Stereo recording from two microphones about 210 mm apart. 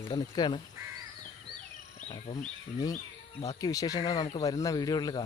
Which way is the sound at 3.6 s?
15° left (ahead or behind).